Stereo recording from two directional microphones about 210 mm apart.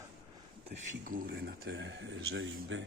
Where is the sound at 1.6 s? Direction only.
60° right (ahead or behind).